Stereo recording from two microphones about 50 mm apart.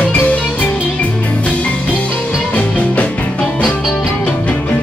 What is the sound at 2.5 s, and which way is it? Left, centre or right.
Music, left.